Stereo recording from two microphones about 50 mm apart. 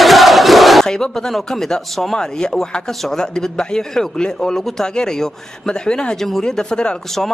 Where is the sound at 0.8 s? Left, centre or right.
Centre.